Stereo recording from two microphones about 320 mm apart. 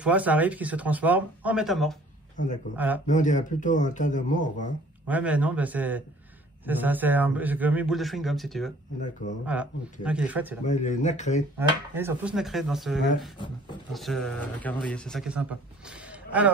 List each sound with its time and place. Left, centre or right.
0.0 s a man's voice: centre
3.1 s speech: left
5.0 s a man's voice: centre
10.6 s speech: left
11.5 s a man's voice: centre
15.9 s a sound: centre